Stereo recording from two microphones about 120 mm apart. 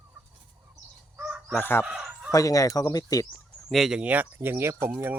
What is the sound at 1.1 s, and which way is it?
Fowl, 15° right (ahead or behind).